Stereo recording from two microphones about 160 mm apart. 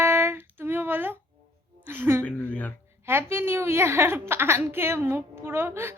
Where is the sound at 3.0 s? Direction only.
15° right (ahead or behind).